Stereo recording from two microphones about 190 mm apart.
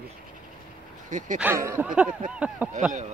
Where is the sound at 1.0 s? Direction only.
40° right (ahead or behind).